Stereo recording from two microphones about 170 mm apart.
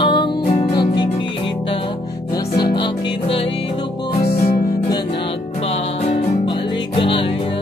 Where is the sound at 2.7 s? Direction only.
30° left (ahead or behind).